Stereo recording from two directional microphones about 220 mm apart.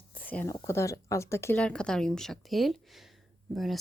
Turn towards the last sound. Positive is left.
turn(degrees=0)  # may be behind; listen again after turning